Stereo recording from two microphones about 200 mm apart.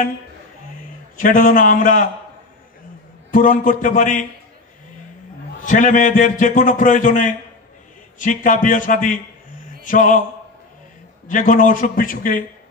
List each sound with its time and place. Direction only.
1.1 s a man's voice: 40° left (ahead or behind)
3.3 s a man's voice: 40° left (ahead or behind)
5.7 s a man's voice: 40° left (ahead or behind)
11.2 s a man's voice: 40° left (ahead or behind)